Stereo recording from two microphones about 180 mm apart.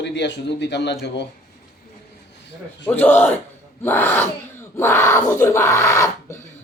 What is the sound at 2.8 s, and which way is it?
A man's voice, 10° left (ahead or behind).